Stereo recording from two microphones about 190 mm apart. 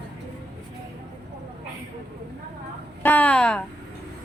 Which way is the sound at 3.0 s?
10° left (ahead or behind).